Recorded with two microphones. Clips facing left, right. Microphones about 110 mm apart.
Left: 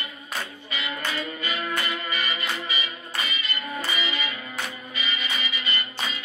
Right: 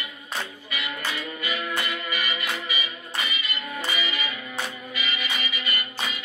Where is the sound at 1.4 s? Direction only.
30° left (ahead or behind).